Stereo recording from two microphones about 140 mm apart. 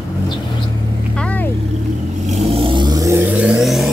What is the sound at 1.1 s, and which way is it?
Vehicle, 10° left (ahead or behind).